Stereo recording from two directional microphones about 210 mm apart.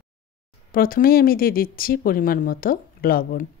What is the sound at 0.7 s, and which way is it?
Speech, 45° left (ahead or behind).